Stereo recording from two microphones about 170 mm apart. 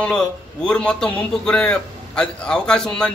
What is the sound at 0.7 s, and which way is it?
A man's voice, 5° left (ahead or behind).